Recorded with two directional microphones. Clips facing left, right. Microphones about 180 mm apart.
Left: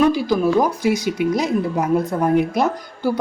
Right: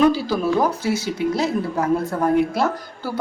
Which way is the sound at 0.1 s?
15° left (ahead or behind).